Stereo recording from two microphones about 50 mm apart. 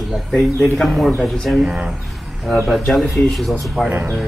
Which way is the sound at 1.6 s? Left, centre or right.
Right.